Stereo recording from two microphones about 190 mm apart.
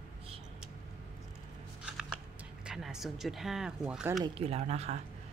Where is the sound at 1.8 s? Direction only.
Centre (ahead or behind).